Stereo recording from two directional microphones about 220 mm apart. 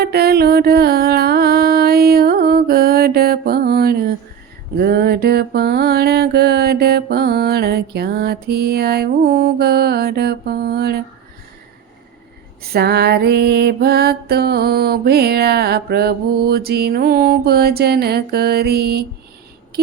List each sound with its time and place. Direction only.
0.0 s music: 45° right (ahead or behind)
4.8 s mantra: 45° right (ahead or behind)
12.7 s music: 50° right (ahead or behind)